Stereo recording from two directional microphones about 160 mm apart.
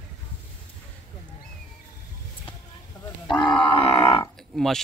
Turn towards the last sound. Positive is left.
turn(degrees=0)  # may be behind; listen again after turning